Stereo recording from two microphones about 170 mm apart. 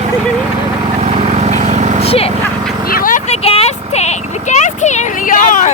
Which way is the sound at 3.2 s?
35° left (ahead or behind).